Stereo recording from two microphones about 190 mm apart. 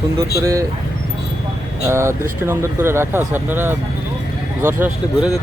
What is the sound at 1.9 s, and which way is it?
Speech, 15° right (ahead or behind).